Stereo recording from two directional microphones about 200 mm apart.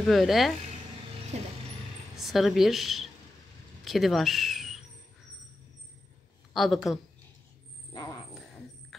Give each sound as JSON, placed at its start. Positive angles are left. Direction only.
{"t": 0.0, "sound": "speech", "side_deg": 0}
{"t": 1.3, "sound": "speech", "side_deg": -35}
{"t": 2.1, "sound": "speech", "side_deg": 0}
{"t": 6.5, "sound": "speech", "side_deg": 0}